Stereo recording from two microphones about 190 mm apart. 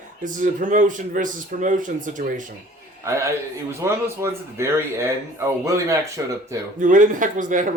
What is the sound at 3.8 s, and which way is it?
Speech, 15° right (ahead or behind).